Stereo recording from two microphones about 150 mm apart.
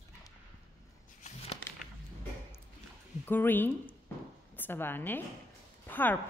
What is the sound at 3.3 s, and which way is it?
A woman's voice, 10° left (ahead or behind).